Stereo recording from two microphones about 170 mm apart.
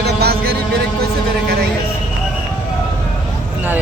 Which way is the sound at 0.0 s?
70° right (ahead or behind).